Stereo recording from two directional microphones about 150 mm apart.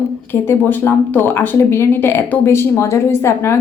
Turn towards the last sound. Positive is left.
turn(degrees=15)  # may be behind; listen again after turning